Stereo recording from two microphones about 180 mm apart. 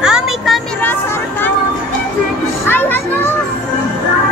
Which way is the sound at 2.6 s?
10° left (ahead or behind).